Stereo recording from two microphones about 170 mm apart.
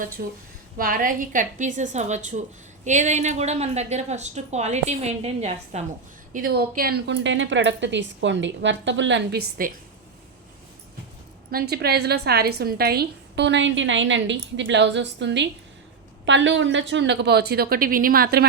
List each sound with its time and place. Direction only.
0.2 s a woman's voice: 60° right (ahead or behind); by 5.8 s 40° right (ahead or behind)
6.3 s a woman's voice: 65° right (ahead or behind)
11.5 s a woman's voice: 70° right (ahead or behind)